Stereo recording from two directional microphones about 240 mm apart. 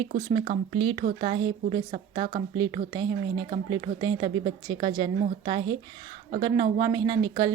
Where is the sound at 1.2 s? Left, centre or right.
Right.